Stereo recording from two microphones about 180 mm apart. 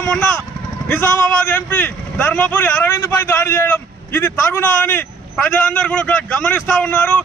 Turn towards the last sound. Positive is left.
turn(degrees=10)  # may be behind; listen again after turning